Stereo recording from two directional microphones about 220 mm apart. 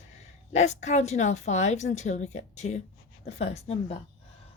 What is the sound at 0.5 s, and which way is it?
A woman's voice, 30° left (ahead or behind).